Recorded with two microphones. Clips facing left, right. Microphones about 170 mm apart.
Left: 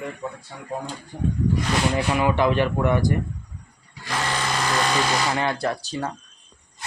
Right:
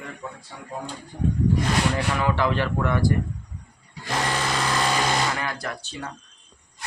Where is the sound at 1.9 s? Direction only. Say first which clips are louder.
Left 3 dB; 15° left (ahead or behind).